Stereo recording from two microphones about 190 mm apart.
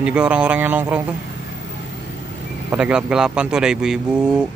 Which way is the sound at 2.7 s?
5° right (ahead or behind).